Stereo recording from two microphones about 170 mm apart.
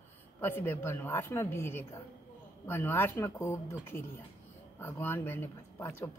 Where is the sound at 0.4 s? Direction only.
15° left (ahead or behind).